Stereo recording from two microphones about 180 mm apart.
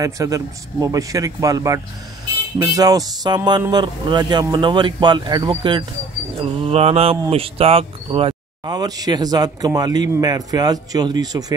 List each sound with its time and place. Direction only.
0.0 s speech: 20° right (ahead or behind)
6.4 s a sound: 35° right (ahead or behind)
7.2 s speech: 30° right (ahead or behind)